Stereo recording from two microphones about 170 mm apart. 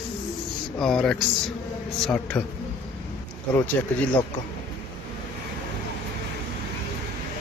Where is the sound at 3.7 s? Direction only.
10° left (ahead or behind).